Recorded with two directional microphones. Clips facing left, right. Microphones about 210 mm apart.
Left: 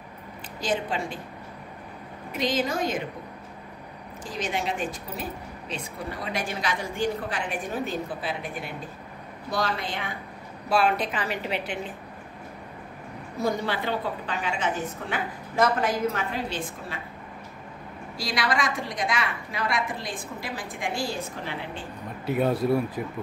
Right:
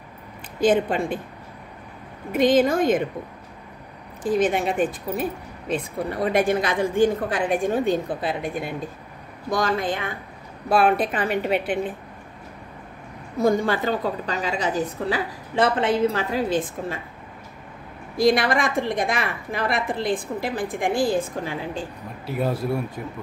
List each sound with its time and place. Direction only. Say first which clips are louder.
0.6 s speech: right 9 dB; 55° right (ahead or behind)
2.3 s a woman's voice: right 9 dB; 55° right (ahead or behind)
4.2 s a woman's voice: right 10 dB; 55° right (ahead or behind)
9.5 s a woman's voice: right 6 dB; 45° right (ahead or behind)
13.4 s a woman's voice: right 7 dB; 50° right (ahead or behind)
18.1 s a woman's voice: right 9 dB; 55° right (ahead or behind)
22.2 s a man's voice: left 1 dB; centre (ahead or behind)